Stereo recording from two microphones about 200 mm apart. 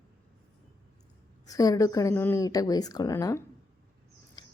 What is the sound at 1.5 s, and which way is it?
A woman's voice, 20° left (ahead or behind).